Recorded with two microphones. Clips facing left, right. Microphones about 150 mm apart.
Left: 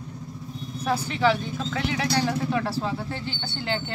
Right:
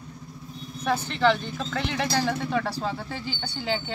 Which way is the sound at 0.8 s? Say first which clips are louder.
Even; 5° left (ahead or behind).